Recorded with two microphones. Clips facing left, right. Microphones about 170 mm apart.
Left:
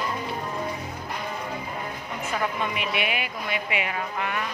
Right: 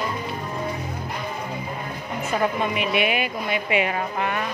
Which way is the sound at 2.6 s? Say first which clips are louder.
Right 5 dB; 20° right (ahead or behind).